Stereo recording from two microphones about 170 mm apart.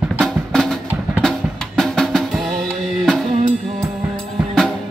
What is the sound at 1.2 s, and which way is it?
Drum, centre (ahead or behind).